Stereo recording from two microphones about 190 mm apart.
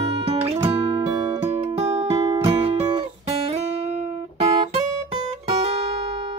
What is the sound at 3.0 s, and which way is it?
Guitar, 35° right (ahead or behind).